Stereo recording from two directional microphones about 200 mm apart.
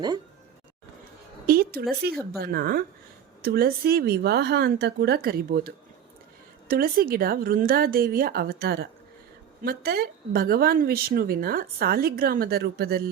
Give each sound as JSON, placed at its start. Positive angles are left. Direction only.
{"t": 1.5, "sound": "speech", "side_deg": -50}